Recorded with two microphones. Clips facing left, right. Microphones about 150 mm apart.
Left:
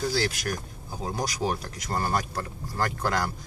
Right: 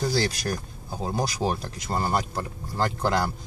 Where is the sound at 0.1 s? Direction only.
35° right (ahead or behind).